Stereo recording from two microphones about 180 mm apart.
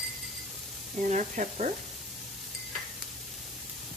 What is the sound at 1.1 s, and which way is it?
Speech, 40° right (ahead or behind).